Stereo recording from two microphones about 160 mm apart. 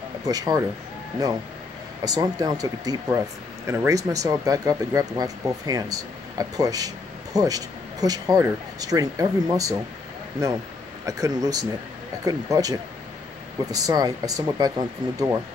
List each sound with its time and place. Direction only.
0.2 s speech: 25° right (ahead or behind)
2.0 s speech: 25° right (ahead or behind)
11.1 s speech: 20° right (ahead or behind)